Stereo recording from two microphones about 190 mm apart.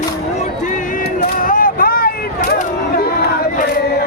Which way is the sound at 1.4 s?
45° left (ahead or behind).